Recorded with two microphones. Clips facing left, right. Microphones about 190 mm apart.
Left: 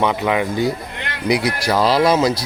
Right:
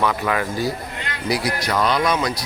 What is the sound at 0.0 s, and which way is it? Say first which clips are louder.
Speech: left 3 dB; 20° left (ahead or behind).